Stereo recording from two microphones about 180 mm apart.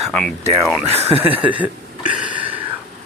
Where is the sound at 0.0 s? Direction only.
5° left (ahead or behind).